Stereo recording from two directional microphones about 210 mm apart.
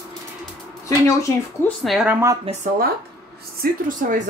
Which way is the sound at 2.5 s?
25° right (ahead or behind).